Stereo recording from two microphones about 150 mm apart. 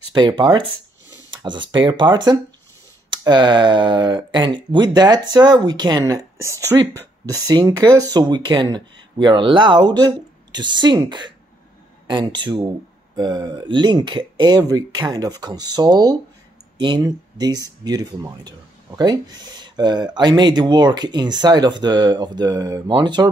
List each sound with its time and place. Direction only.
0.1 s speech: 30° right (ahead or behind)